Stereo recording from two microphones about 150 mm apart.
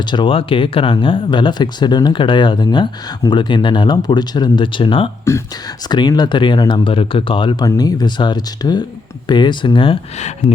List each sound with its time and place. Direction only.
0.0 s speech: 30° left (ahead or behind)
5.3 s speech: 20° left (ahead or behind); by 10.3 s 40° left (ahead or behind)